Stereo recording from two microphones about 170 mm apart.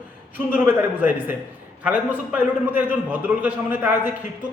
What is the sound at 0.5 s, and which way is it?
A man's voice, 10° right (ahead or behind).